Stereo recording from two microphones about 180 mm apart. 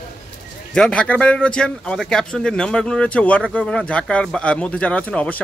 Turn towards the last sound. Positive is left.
turn(degrees=10)  # may be behind; listen again after turning